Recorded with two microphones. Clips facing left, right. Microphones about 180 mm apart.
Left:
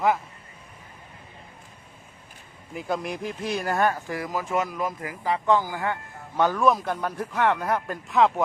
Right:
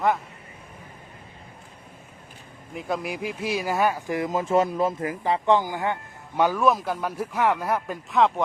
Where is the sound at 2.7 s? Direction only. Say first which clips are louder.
Even; centre (ahead or behind).